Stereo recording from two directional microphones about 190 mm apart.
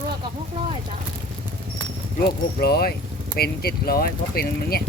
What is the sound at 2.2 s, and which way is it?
Speech, 55° left (ahead or behind).